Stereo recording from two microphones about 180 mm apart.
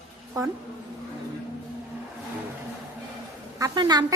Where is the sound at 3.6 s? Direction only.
20° right (ahead or behind).